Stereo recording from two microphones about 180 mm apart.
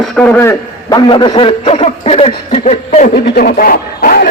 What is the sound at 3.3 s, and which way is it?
Speech, 55° left (ahead or behind).